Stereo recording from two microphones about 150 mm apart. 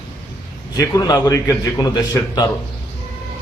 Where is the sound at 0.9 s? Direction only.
25° left (ahead or behind).